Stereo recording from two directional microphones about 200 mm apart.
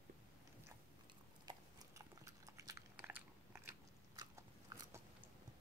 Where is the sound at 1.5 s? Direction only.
20° right (ahead or behind).